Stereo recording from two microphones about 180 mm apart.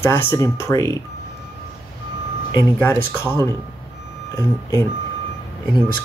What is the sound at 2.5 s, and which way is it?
Speech, 15° left (ahead or behind).